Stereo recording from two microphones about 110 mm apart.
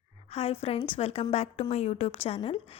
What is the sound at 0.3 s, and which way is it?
A woman's voice, 65° left (ahead or behind).